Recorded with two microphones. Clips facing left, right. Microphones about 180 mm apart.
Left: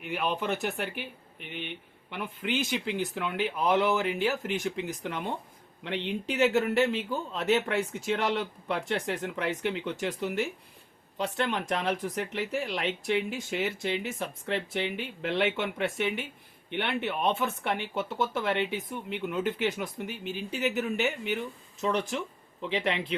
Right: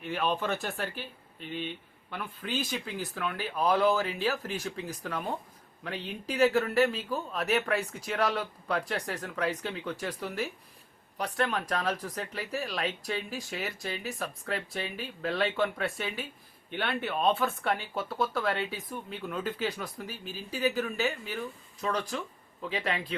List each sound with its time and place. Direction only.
0.0 s speech: 15° left (ahead or behind)